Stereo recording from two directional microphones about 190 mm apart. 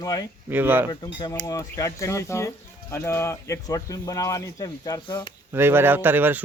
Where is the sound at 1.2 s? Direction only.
20° left (ahead or behind).